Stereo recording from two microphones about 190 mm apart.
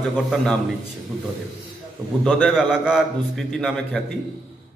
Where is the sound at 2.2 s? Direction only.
5° left (ahead or behind).